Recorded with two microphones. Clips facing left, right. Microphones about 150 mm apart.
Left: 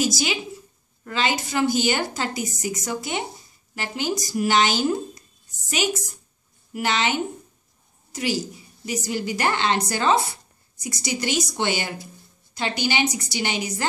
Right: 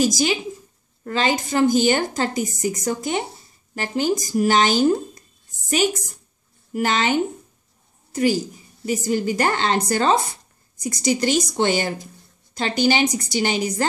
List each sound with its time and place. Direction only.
0.0 s a woman's voice: 40° right (ahead or behind)
6.7 s a woman's voice: 45° right (ahead or behind)
8.8 s a woman's voice: 45° right (ahead or behind)